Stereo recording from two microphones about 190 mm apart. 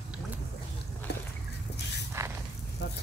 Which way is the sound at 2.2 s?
15° right (ahead or behind).